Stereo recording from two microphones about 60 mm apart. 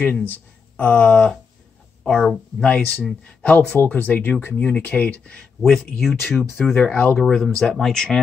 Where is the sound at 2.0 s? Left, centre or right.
Centre.